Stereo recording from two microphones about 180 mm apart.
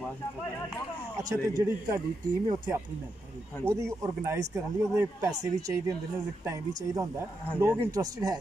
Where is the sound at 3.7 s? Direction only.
15° right (ahead or behind).